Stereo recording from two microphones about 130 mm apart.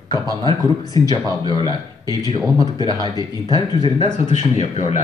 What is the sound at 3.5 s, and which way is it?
Speech, 30° left (ahead or behind).